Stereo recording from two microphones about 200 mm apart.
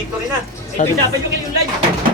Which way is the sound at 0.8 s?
40° left (ahead or behind).